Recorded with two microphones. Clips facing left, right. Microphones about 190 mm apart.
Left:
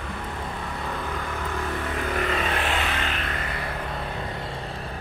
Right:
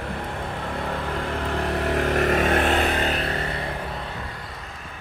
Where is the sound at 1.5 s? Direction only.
65° right (ahead or behind).